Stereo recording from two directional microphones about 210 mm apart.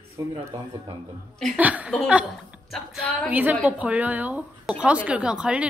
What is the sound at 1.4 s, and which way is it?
A woman's voice, 5° right (ahead or behind).